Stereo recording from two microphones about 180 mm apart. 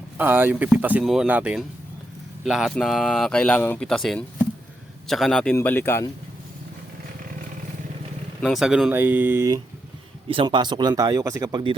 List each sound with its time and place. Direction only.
0.2 s speech: 10° right (ahead or behind); by 6.1 s 15° left (ahead or behind)
8.4 s speech: centre (ahead or behind)
10.2 s speech: 25° right (ahead or behind)